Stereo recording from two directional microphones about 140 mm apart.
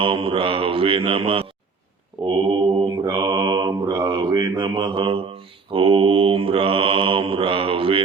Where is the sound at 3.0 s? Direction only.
30° right (ahead or behind).